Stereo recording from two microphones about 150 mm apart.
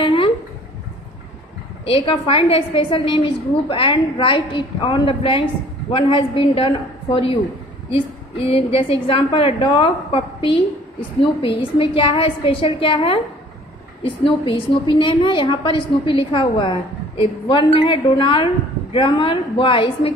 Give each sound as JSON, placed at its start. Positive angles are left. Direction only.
{"t": 0.0, "sound": "a sound", "side_deg": 35}
{"t": 1.9, "sound": "a woman's voice", "side_deg": 35}
{"t": 8.4, "sound": "a woman's voice", "side_deg": 40}
{"t": 11.8, "sound": "a woman's voice", "side_deg": 40}